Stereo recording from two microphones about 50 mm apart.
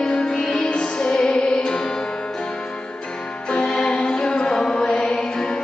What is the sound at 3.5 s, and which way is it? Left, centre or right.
Music, centre.